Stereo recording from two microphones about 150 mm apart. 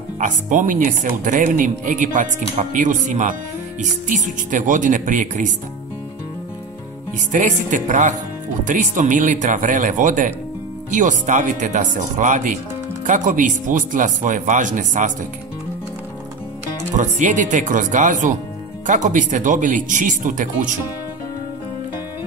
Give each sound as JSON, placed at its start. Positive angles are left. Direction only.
{"t": 0.2, "sound": "speech", "side_deg": -60}
{"t": 4.5, "sound": "speech", "side_deg": -60}
{"t": 7.3, "sound": "speech", "side_deg": -60}
{"t": 16.9, "sound": "speech", "side_deg": -55}